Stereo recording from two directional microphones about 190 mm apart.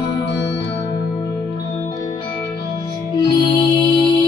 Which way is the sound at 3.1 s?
20° left (ahead or behind).